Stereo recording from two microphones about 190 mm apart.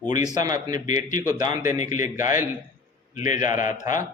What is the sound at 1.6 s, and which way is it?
Speech, 40° left (ahead or behind).